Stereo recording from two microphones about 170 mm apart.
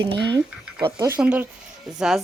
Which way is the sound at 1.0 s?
15° right (ahead or behind).